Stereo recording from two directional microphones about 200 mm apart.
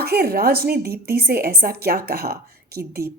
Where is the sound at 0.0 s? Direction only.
50° right (ahead or behind).